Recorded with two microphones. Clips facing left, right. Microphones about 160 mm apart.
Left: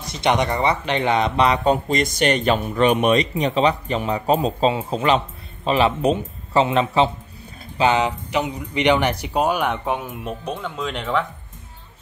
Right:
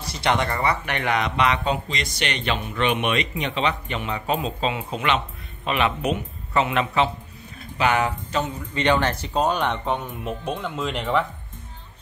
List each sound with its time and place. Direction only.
0.0 s speech: 20° left (ahead or behind); by 11.2 s centre (ahead or behind)